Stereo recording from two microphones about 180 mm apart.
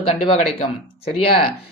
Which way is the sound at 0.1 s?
35° left (ahead or behind).